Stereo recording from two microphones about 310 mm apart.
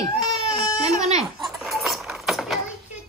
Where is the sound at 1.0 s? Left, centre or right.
Right.